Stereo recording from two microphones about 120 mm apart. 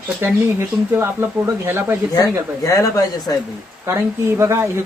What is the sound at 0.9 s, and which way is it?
Speech, 20° right (ahead or behind).